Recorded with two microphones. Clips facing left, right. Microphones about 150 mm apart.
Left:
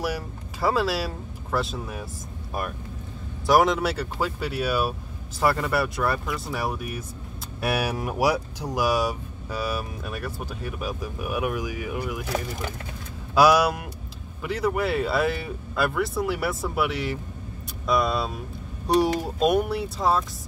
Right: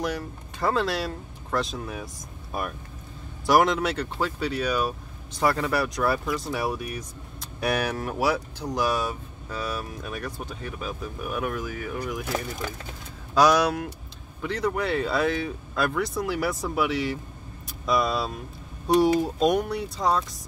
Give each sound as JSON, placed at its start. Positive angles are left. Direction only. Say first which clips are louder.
{"t": 0.0, "sound": "speech", "louder": "even", "side_deg": 5}
{"t": 3.4, "sound": "speech", "louder": "left 1 dB", "side_deg": 0}
{"t": 13.3, "sound": "speech", "louder": "left 1 dB", "side_deg": 10}